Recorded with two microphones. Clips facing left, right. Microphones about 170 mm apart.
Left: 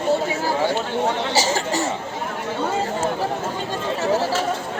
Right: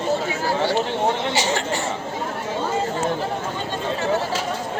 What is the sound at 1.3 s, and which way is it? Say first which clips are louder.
Speech: left 1 dB; 40° left (ahead or behind).